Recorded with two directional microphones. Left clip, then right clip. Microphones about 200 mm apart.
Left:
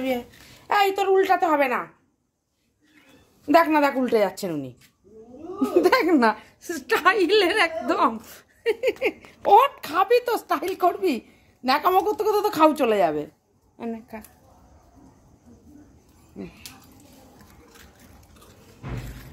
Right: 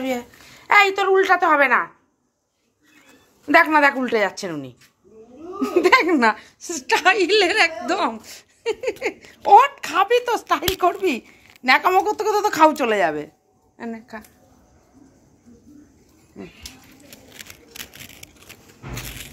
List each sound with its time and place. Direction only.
0.0 s speech: 10° left (ahead or behind)
3.4 s speech: 10° left (ahead or behind)